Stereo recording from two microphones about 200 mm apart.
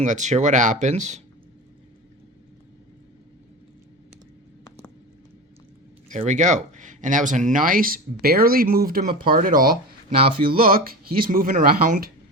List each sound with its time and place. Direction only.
0.0 s speech: 35° right (ahead or behind)
6.1 s speech: 35° right (ahead or behind)